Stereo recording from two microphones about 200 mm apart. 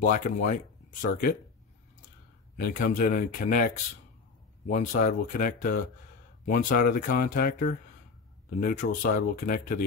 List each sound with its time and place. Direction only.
0.0 s speech: 40° left (ahead or behind)
2.5 s speech: 45° left (ahead or behind)